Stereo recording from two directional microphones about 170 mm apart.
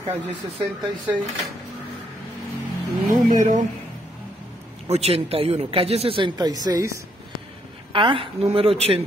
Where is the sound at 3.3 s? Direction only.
50° right (ahead or behind).